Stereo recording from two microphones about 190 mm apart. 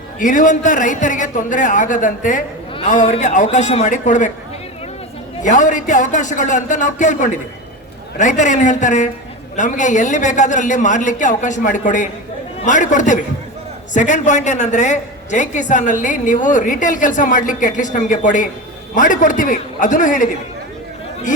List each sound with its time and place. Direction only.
0.2 s a man's voice: 45° left (ahead or behind)
5.4 s a woman's voice: 40° left (ahead or behind)